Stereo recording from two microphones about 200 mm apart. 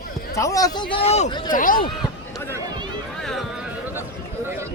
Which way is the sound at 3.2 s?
Centre (ahead or behind).